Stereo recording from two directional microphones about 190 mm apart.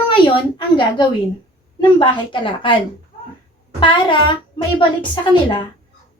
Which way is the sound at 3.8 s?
25° left (ahead or behind).